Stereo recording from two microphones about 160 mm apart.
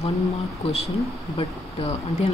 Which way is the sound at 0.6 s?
40° left (ahead or behind).